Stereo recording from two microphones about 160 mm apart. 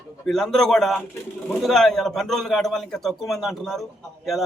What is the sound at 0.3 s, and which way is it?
A man's voice, 5° left (ahead or behind).